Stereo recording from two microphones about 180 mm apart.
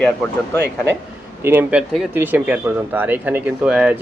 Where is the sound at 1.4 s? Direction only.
15° right (ahead or behind).